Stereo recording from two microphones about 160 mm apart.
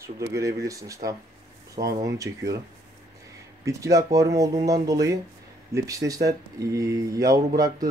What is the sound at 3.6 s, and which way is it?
Speech, 20° right (ahead or behind).